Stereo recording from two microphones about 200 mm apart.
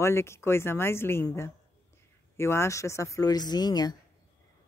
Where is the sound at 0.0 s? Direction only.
15° left (ahead or behind).